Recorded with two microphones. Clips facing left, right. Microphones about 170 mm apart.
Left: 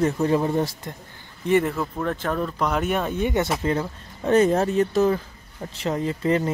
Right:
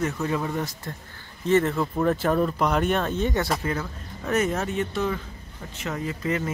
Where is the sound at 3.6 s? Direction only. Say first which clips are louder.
Left 5 dB; 30° left (ahead or behind).